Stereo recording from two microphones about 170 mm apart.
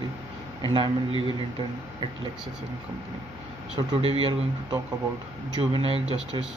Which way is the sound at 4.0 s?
35° right (ahead or behind).